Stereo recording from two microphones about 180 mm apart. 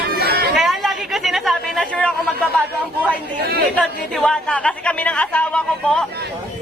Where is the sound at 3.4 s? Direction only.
60° right (ahead or behind).